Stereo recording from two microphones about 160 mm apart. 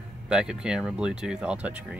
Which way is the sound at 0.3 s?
5° right (ahead or behind).